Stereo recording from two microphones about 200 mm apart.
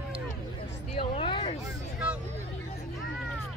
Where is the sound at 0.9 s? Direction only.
25° left (ahead or behind).